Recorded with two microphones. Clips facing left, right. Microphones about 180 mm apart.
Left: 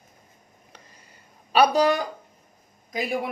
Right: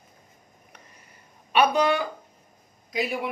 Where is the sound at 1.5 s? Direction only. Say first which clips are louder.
Left 2 dB; 35° left (ahead or behind).